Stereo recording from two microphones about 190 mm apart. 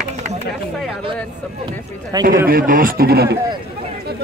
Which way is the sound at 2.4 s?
50° right (ahead or behind).